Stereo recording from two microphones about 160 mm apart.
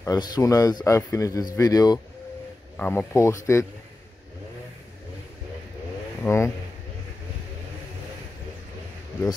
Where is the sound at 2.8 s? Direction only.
10° left (ahead or behind).